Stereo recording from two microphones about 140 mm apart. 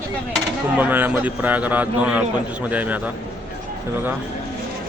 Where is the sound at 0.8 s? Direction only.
15° right (ahead or behind).